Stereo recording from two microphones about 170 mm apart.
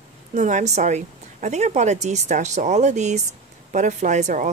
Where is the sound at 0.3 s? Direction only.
45° right (ahead or behind).